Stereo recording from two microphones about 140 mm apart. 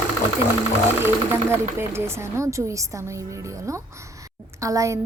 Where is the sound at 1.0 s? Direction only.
15° right (ahead or behind).